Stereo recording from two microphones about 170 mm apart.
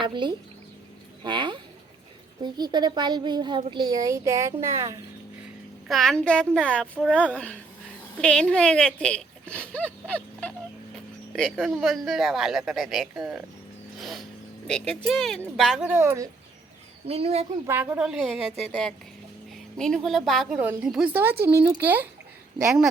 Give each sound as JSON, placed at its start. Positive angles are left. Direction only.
{"t": 0.0, "sound": "a child's voice", "side_deg": -30}
{"t": 5.9, "sound": "speech", "side_deg": 0}
{"t": 11.5, "sound": "speech", "side_deg": 0}
{"t": 15.9, "sound": "speech", "side_deg": -15}
{"t": 17.1, "sound": "speech", "side_deg": -35}
{"t": 17.7, "sound": "speech", "side_deg": -10}